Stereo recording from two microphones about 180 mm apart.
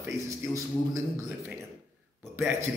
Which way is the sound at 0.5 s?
20° right (ahead or behind).